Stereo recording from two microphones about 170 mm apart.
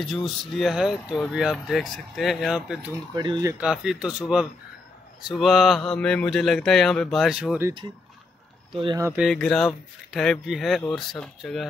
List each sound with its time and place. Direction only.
0.0 s speech: centre (ahead or behind)
3.2 s speech: 25° right (ahead or behind)
3.5 s speech: 5° right (ahead or behind)
8.7 s speech: 30° right (ahead or behind)
9.2 s speech: 5° left (ahead or behind)